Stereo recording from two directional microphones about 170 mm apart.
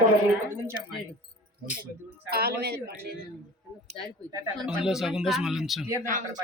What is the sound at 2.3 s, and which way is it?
Speech, 65° right (ahead or behind).